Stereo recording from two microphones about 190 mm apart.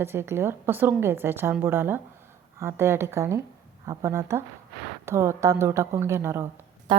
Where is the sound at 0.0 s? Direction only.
15° right (ahead or behind).